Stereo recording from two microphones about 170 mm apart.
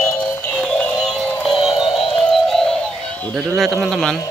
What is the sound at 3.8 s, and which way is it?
Speech, 5° left (ahead or behind).